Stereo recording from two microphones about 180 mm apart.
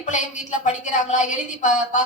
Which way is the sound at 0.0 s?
40° left (ahead or behind).